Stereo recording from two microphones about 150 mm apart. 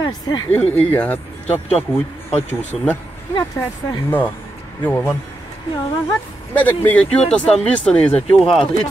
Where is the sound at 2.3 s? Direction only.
45° left (ahead or behind).